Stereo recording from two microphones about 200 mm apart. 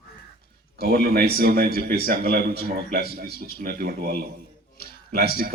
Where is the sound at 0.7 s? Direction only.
50° right (ahead or behind).